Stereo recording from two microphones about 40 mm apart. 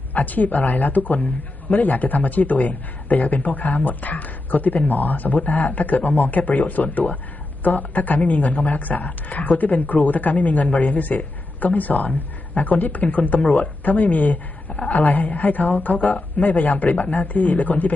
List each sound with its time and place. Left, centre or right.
0.1 s a man's voice: left